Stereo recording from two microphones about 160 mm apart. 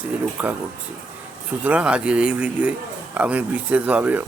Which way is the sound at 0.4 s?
10° right (ahead or behind).